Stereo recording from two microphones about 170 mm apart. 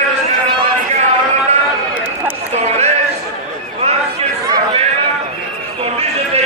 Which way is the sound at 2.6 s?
40° right (ahead or behind).